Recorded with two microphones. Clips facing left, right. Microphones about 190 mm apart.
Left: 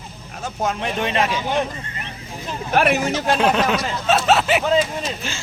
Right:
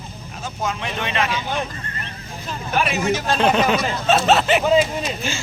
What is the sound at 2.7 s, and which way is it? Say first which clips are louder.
Speech: left 4 dB; 60° left (ahead or behind).